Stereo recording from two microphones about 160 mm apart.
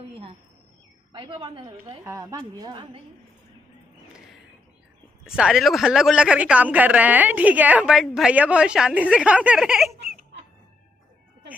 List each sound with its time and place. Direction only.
1.1 s a woman's voice: 30° right (ahead or behind)
5.2 s speech: 5° right (ahead or behind)